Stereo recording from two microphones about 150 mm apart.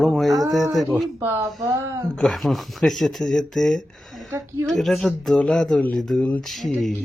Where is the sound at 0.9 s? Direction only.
10° right (ahead or behind).